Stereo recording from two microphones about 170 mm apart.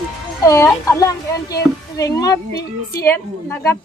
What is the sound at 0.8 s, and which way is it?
Speech, 20° left (ahead or behind).